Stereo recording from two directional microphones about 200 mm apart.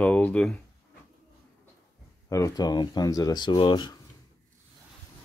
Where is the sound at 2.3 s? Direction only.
15° left (ahead or behind).